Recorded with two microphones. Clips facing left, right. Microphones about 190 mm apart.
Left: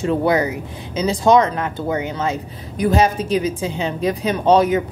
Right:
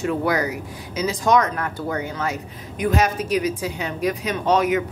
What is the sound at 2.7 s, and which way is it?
Speech, 35° left (ahead or behind).